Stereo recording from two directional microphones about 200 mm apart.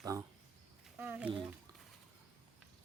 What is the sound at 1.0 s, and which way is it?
Speech, 10° right (ahead or behind).